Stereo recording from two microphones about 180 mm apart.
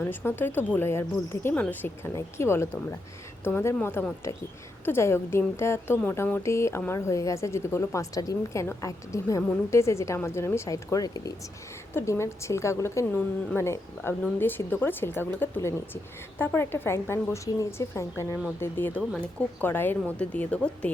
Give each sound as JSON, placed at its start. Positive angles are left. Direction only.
{"t": 0.0, "sound": "speech", "side_deg": 10}